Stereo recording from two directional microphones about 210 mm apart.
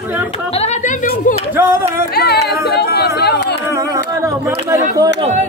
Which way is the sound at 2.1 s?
50° left (ahead or behind).